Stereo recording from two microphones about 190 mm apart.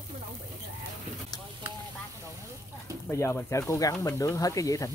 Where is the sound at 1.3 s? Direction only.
20° left (ahead or behind).